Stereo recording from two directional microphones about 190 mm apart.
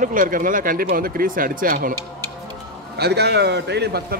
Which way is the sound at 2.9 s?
60° right (ahead or behind).